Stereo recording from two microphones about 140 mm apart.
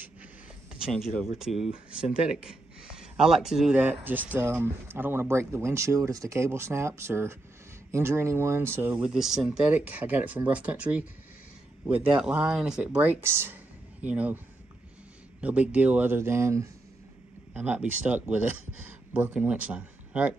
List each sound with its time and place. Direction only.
1.4 s speech: 5° right (ahead or behind)
15.4 s speech: 10° right (ahead or behind)